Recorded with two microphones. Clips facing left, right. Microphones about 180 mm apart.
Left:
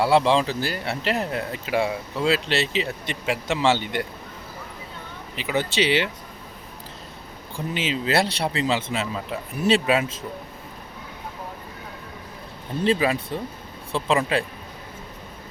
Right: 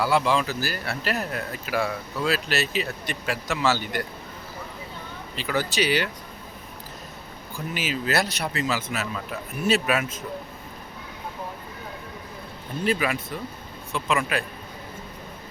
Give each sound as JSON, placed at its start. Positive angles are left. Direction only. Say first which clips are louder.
{"t": 0.0, "sound": "speech", "louder": "left 4 dB", "side_deg": 30}
{"t": 5.4, "sound": "speech", "louder": "left 2 dB", "side_deg": 20}
{"t": 7.5, "sound": "speech", "louder": "left 3 dB", "side_deg": 25}
{"t": 12.8, "sound": "speech", "louder": "left 4 dB", "side_deg": 30}